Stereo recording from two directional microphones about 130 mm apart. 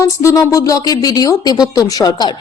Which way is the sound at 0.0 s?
25° left (ahead or behind).